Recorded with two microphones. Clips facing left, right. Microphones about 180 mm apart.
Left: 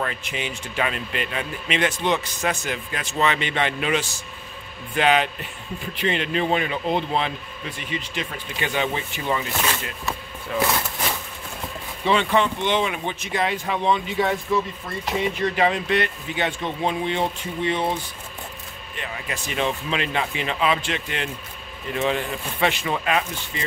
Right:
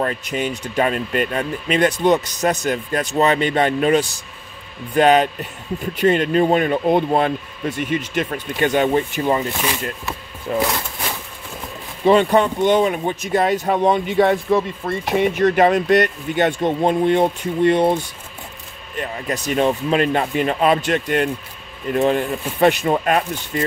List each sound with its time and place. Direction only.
0.0 s speech: 40° right (ahead or behind)
12.0 s speech: 45° right (ahead or behind)
18.9 s speech: 40° right (ahead or behind)